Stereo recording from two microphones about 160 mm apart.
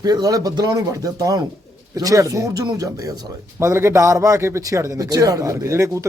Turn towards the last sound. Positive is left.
turn(degrees=-20)  # may be behind; listen again after turning